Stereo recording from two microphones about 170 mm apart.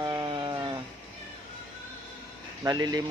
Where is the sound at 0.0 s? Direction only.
25° right (ahead or behind).